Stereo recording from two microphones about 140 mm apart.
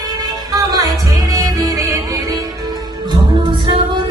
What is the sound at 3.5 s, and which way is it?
Music, 35° right (ahead or behind).